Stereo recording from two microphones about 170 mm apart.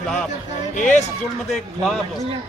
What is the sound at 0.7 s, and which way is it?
Speech, 45° left (ahead or behind).